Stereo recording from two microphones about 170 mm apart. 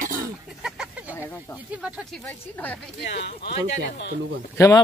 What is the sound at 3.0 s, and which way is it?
Speech, 80° left.